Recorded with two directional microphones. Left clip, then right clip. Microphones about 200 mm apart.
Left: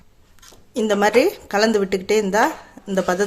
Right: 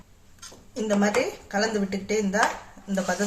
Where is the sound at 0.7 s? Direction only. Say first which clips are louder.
Left 8 dB; 55° left (ahead or behind).